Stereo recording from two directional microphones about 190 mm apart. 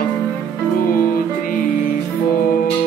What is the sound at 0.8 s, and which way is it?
Music, 50° left (ahead or behind).